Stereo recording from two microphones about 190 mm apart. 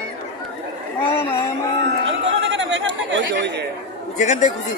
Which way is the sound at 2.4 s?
80° right.